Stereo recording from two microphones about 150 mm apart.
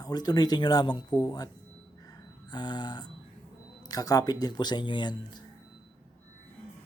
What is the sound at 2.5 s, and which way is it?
Speech, 30° left (ahead or behind).